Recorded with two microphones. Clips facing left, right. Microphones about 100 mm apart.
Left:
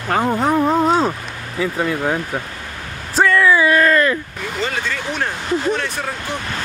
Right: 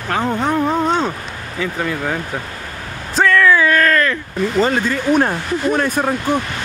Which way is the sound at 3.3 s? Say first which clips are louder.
Right 1 dB; 10° left (ahead or behind).